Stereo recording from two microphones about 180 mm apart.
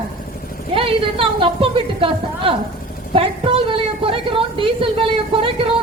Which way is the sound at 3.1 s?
30° right (ahead or behind).